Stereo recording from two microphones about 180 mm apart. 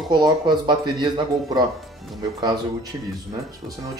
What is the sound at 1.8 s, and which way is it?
Music, centre (ahead or behind).